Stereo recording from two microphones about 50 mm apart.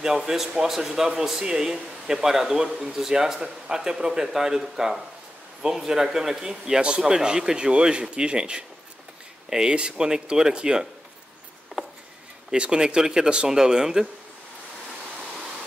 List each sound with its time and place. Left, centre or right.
0.0 s speech: centre
11.7 s a sound: centre
12.4 s speech: centre